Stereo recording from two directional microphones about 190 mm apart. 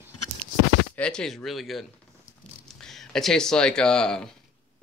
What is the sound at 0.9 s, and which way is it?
Speech, 5° left (ahead or behind).